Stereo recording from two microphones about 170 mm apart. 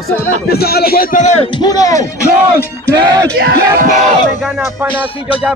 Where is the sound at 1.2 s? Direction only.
40° left (ahead or behind).